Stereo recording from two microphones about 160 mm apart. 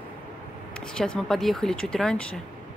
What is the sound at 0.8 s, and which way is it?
Speech, 5° left (ahead or behind).